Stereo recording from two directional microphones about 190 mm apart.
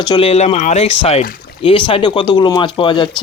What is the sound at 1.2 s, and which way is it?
Rowboat, 50° left (ahead or behind).